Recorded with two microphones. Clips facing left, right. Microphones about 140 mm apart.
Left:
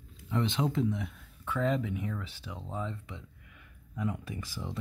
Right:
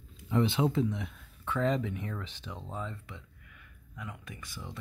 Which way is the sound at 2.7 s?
20° left (ahead or behind).